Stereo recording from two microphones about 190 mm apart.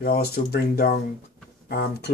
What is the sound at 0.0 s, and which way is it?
Speech, 55° left (ahead or behind).